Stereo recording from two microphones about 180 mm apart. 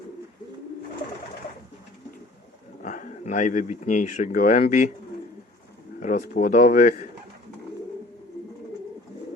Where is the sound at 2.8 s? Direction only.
45° left (ahead or behind).